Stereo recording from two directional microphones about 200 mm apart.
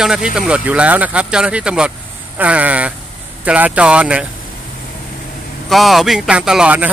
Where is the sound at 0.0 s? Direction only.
5° right (ahead or behind).